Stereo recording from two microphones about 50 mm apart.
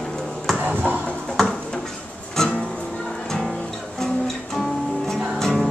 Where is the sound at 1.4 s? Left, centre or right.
Centre.